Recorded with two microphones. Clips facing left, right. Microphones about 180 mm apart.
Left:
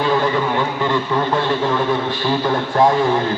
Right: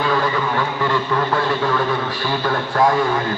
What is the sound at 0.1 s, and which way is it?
A man's voice, 20° left (ahead or behind).